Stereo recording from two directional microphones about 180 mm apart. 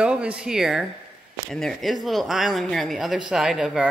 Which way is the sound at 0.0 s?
5° right (ahead or behind).